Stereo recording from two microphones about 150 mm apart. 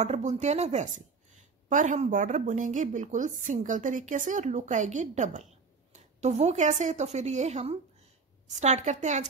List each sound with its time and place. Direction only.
0.0 s a woman's voice: 50° right (ahead or behind)